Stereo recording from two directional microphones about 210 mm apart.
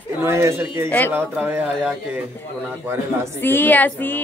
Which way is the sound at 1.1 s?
10° right (ahead or behind).